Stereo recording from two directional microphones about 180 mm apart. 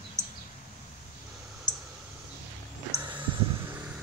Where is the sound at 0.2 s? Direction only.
40° left (ahead or behind).